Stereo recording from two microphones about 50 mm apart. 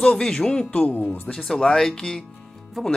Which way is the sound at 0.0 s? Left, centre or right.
Centre.